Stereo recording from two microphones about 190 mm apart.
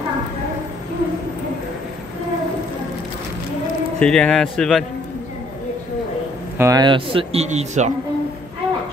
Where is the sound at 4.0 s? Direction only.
5° left (ahead or behind).